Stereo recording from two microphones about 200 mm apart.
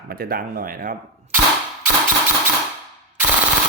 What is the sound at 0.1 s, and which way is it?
Speech, 50° right (ahead or behind).